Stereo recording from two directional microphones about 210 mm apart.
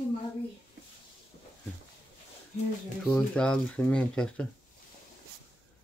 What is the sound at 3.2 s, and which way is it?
Speech, 5° left (ahead or behind).